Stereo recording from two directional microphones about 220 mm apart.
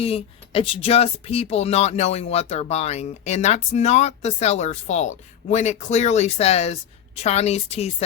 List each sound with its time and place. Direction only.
0.0 s speech: 25° left (ahead or behind)